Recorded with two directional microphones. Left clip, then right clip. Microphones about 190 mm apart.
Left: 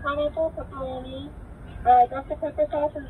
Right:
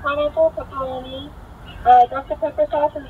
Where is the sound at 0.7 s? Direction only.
5° left (ahead or behind).